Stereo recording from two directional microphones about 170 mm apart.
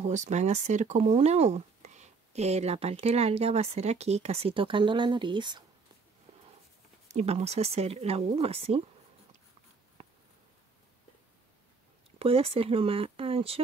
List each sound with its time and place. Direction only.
0.0 s speech: 45° right (ahead or behind); by 5.6 s 25° right (ahead or behind)
7.1 s speech: 40° right (ahead or behind)
12.2 s speech: 35° right (ahead or behind)